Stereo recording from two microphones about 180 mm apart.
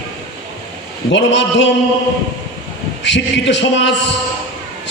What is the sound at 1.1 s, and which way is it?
Speech, 80° left.